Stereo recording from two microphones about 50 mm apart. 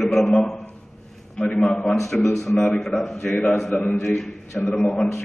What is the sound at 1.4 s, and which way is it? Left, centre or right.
Speech, left.